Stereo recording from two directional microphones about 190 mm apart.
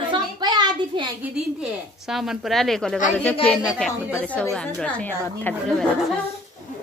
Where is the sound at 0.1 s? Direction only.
20° right (ahead or behind).